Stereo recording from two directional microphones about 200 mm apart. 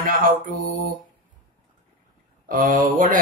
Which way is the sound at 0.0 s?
45° right (ahead or behind).